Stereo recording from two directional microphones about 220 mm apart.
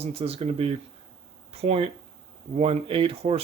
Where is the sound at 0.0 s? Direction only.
25° right (ahead or behind).